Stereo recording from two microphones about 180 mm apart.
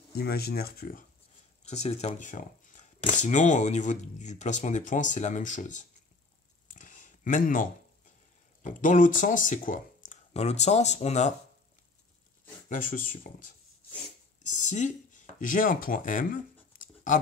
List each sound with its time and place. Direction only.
0.1 s speech: 60° left (ahead or behind)
1.6 s speech: 40° left (ahead or behind)
6.7 s a sound: 45° left (ahead or behind)
8.6 s speech: 45° left (ahead or behind)
12.6 s speech: 50° left (ahead or behind)